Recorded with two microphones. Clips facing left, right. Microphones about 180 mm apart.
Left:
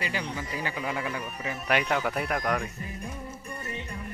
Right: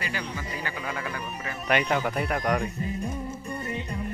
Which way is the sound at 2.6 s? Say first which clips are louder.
Right 6 dB; 20° right (ahead or behind).